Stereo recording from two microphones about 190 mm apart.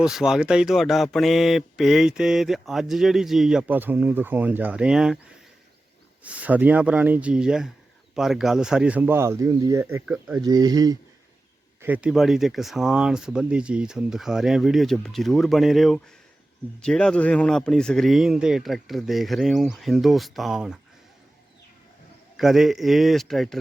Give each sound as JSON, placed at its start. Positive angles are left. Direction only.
{"t": 0.0, "sound": "speech", "side_deg": -5}
{"t": 6.2, "sound": "speech", "side_deg": -5}
{"t": 10.4, "sound": "speech", "side_deg": -20}
{"t": 11.8, "sound": "speech", "side_deg": -10}
{"t": 22.4, "sound": "speech", "side_deg": 0}